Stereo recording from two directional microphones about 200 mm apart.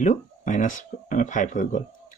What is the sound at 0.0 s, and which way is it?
Speech, 40° left (ahead or behind).